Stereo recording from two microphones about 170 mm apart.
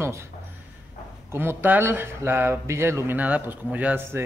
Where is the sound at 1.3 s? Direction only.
15° right (ahead or behind).